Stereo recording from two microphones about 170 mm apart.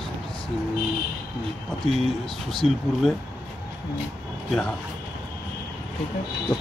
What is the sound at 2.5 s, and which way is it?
Speech, centre (ahead or behind).